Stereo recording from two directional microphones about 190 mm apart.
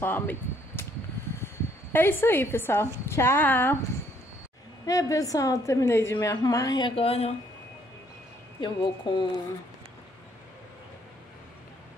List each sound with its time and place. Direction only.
0.0 s speech: 10° left (ahead or behind)
1.9 s a woman's voice: 10° left (ahead or behind)
4.8 s a woman's voice: 20° left (ahead or behind)
8.5 s a woman's voice: 25° left (ahead or behind)